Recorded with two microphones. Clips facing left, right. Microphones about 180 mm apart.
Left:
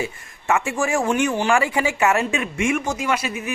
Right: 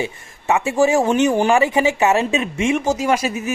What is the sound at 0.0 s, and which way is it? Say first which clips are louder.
Speech: right 3 dB; 20° right (ahead or behind).